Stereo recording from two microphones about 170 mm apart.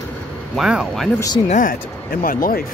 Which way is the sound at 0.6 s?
5° right (ahead or behind).